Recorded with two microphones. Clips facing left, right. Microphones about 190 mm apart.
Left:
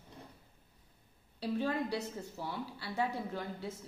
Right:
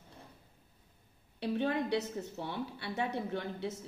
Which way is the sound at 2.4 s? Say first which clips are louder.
Even; 25° right (ahead or behind).